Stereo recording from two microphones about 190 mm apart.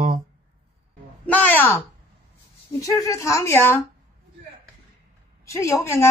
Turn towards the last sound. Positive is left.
turn(degrees=15)  # may be behind; listen again after turning